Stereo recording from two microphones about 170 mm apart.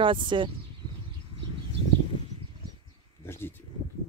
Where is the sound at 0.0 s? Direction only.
30° right (ahead or behind).